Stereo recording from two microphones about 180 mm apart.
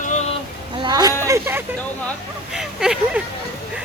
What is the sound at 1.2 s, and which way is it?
Hubbub, 15° right (ahead or behind).